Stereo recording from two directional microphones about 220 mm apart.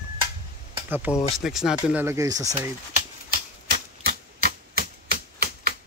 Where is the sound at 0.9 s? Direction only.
10° right (ahead or behind).